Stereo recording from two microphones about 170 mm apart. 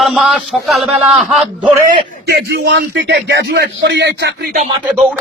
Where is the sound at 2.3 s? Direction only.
85° right.